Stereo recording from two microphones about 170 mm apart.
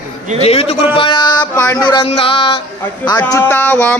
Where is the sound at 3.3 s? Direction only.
15° left (ahead or behind).